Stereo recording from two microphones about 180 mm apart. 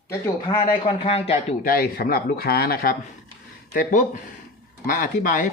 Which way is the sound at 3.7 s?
45° left (ahead or behind).